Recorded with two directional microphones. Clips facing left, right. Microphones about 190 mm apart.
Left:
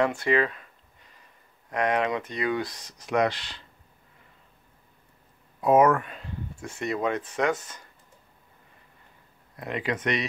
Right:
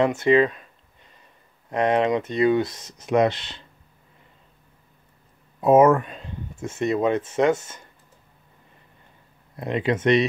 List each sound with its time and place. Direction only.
0.0 s speech: 20° right (ahead or behind)
1.7 s speech: 25° right (ahead or behind)
5.6 s speech: 25° right (ahead or behind)
9.6 s speech: 25° right (ahead or behind)